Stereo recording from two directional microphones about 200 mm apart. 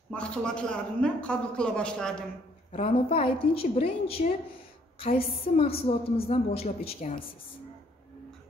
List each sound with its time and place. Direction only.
0.1 s a man's voice: 5° left (ahead or behind)
2.7 s a woman's voice: 30° left (ahead or behind)